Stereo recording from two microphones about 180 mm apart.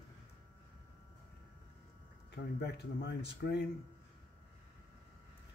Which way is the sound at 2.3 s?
65° left (ahead or behind).